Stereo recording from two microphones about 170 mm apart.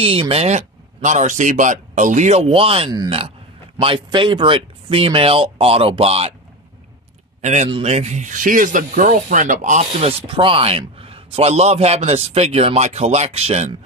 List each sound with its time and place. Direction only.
0.0 s speech: 35° right (ahead or behind)
2.9 s speech: 25° right (ahead or behind)
7.4 s speech: 40° right (ahead or behind)